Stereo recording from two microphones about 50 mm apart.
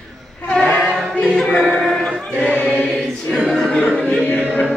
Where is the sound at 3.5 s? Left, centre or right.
Centre.